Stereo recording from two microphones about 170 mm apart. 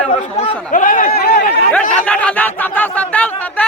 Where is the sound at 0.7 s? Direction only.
50° left (ahead or behind); by 1.4 s 65° left (ahead or behind).